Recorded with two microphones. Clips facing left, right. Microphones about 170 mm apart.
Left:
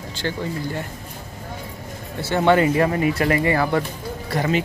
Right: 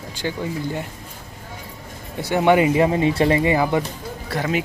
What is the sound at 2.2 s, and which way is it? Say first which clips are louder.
Speech: right 1 dB; 15° right (ahead or behind).